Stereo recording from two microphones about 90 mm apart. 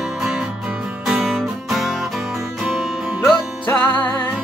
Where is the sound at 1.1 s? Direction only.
5° right (ahead or behind).